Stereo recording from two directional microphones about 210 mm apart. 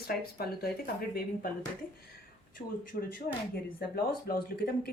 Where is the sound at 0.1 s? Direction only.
45° left (ahead or behind).